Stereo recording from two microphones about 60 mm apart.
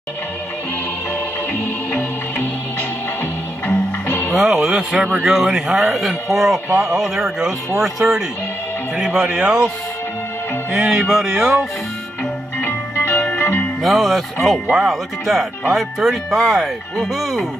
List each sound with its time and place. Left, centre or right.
1.9 s music: left
3.6 s music: left
4.4 s music: centre
5.2 s speech: centre
7.2 s music: centre
8.0 s speech: right
9.2 s music: centre
10.7 s music: centre
12.5 s music: left
13.8 s speech: centre